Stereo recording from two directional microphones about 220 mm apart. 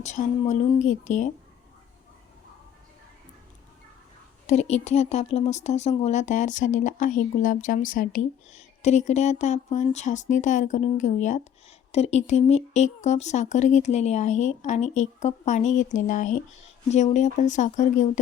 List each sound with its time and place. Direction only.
0.0 s speech: 30° left (ahead or behind)
4.4 s speech: 30° left (ahead or behind)